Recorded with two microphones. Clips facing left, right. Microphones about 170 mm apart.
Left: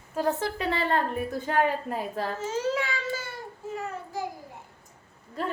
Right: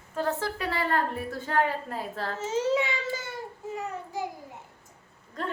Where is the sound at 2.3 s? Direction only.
20° right (ahead or behind).